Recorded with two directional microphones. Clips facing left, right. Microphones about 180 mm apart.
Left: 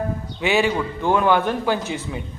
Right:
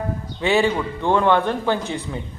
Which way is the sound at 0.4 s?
5° left (ahead or behind).